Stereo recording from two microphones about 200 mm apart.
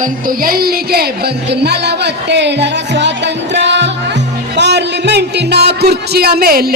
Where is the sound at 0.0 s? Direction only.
45° right (ahead or behind).